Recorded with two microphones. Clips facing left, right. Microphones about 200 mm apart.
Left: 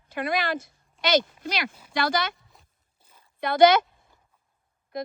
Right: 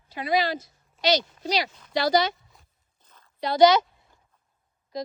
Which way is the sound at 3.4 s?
55° left (ahead or behind).